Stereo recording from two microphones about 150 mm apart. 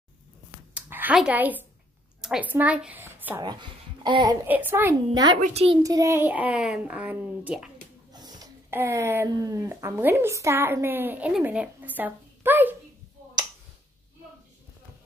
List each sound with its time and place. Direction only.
0.7 s a sound: 10° right (ahead or behind)
1.1 s a woman's voice: 10° right (ahead or behind)
3.4 s speech: 30° right (ahead or behind)
4.5 s a woman's voice: 10° right (ahead or behind)
5.1 s a child's voice: 25° right (ahead or behind)
5.4 s a child's voice: 45° right (ahead or behind)
5.8 s a woman's voice: 20° right (ahead or behind); by 7.7 s 5° right (ahead or behind)
8.1 s a sound: 25° right (ahead or behind)
8.6 s a woman's voice: 15° right (ahead or behind)